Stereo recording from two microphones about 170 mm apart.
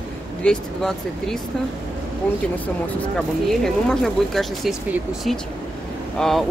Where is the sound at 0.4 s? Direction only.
5° left (ahead or behind).